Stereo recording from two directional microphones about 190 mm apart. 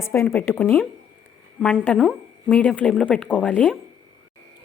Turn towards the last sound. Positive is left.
turn(degrees=-5)  # may be behind; listen again after turning